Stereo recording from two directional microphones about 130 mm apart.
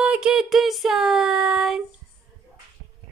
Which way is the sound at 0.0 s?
5° right (ahead or behind).